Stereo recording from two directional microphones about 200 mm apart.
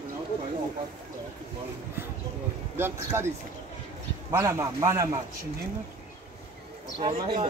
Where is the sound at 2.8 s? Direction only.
10° right (ahead or behind).